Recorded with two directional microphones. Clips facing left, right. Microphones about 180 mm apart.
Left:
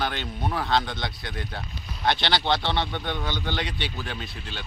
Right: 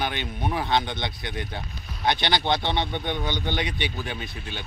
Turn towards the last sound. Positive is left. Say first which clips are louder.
# right 1 dB
turn(degrees=-15)  # may be behind; listen again after turning